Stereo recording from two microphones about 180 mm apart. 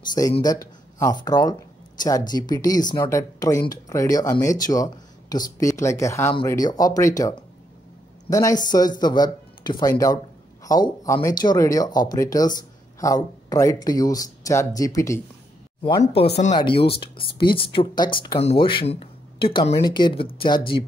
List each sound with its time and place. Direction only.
0.4 s speech: 20° left (ahead or behind)
16.2 s speech: 35° left (ahead or behind)